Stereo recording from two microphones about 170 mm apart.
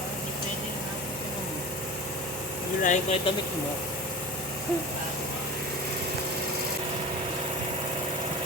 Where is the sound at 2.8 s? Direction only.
45° left (ahead or behind).